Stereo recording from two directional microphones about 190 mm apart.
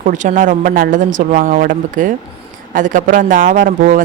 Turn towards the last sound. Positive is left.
turn(degrees=-45)  # may be behind; listen again after turning